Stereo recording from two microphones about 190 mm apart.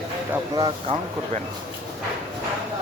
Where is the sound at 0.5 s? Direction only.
25° right (ahead or behind).